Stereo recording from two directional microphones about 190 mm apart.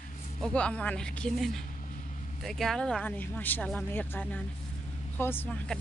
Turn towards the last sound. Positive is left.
turn(degrees=10)  # may be behind; listen again after turning